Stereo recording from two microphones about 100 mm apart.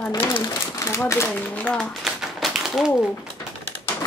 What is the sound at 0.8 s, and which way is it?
Speech, 30° left (ahead or behind).